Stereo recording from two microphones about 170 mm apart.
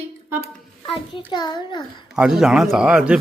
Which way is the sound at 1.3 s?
25° left (ahead or behind).